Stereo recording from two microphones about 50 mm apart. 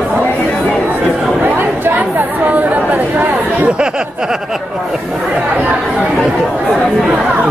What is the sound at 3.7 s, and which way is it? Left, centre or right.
Chatter, centre.